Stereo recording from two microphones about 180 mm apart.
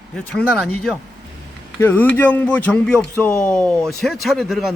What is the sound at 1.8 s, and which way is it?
Speech, 10° left (ahead or behind).